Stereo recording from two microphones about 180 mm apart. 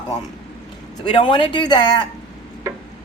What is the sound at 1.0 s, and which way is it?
Speech, 25° left (ahead or behind).